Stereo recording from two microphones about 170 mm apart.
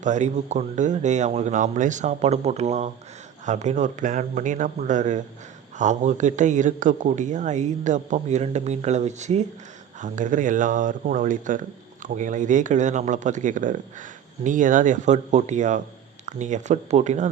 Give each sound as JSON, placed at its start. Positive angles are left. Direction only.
{"t": 0.0, "sound": "speech", "side_deg": -45}